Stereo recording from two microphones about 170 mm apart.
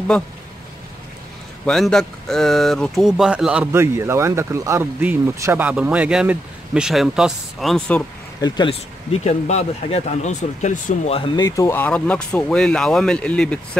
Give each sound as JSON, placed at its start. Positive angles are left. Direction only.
{"t": 1.7, "sound": "speech", "side_deg": 5}
{"t": 8.4, "sound": "speech", "side_deg": 25}
{"t": 9.1, "sound": "speech", "side_deg": 40}
{"t": 11.1, "sound": "speech", "side_deg": 25}